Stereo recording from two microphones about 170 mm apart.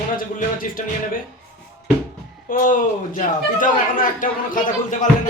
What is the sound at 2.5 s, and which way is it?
A man's voice, 50° left (ahead or behind).